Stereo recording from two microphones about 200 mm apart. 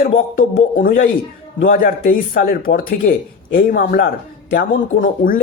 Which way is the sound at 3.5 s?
45° left (ahead or behind).